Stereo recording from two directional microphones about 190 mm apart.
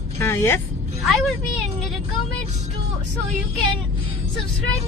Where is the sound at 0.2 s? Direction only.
15° left (ahead or behind).